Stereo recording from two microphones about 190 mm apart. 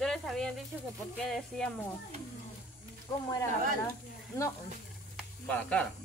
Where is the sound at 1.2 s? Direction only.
5° left (ahead or behind).